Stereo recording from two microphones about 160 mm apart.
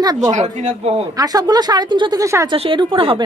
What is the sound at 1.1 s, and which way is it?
Speech, 25° right (ahead or behind).